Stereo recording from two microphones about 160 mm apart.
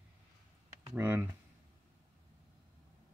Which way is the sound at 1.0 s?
15° right (ahead or behind).